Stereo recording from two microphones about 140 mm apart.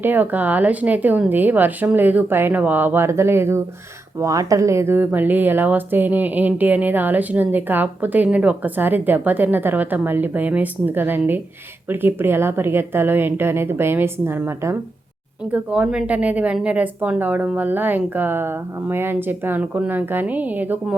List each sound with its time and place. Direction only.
0.0 s speech: 15° right (ahead or behind)